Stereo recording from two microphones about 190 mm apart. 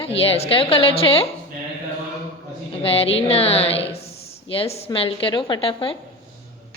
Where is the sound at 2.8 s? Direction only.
30° left (ahead or behind).